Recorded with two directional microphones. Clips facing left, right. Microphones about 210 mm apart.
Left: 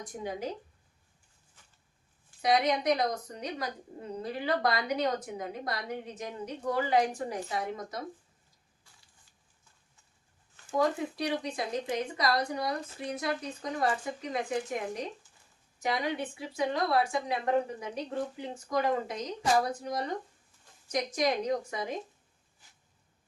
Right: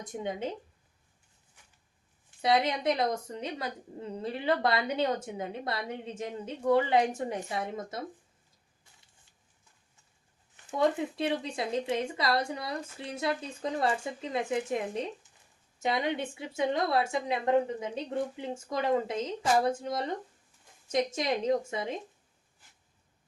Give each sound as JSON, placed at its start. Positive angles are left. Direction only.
{"t": 0.0, "sound": "speech", "side_deg": -25}
{"t": 2.4, "sound": "speech", "side_deg": -25}
{"t": 10.7, "sound": "speech", "side_deg": -25}